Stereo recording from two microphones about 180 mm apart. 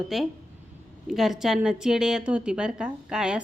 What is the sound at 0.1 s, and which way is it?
A woman's voice, centre (ahead or behind).